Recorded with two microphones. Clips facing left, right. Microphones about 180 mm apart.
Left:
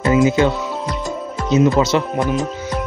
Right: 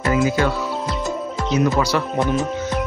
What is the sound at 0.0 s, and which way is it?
Speech, 25° left (ahead or behind).